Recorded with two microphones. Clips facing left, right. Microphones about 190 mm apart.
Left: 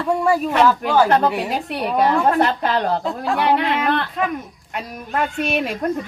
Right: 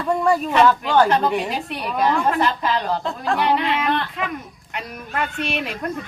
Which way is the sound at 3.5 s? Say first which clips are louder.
Left 2 dB; 50° left (ahead or behind).